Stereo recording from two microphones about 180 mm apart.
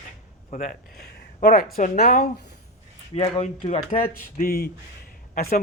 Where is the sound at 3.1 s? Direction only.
35° left (ahead or behind).